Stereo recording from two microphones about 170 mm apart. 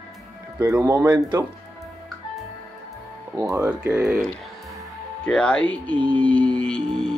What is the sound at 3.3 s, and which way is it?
Speech, 20° right (ahead or behind).